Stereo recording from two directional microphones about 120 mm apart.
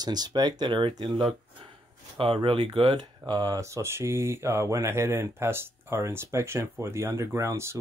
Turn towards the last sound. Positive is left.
turn(degrees=-20)  # may be behind; listen again after turning